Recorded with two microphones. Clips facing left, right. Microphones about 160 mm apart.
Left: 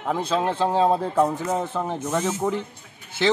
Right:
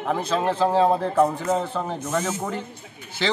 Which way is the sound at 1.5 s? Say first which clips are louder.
Right 1 dB; 15° left (ahead or behind).